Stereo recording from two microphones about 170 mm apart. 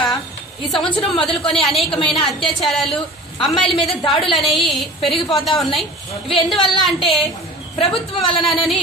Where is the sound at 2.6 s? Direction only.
Centre (ahead or behind).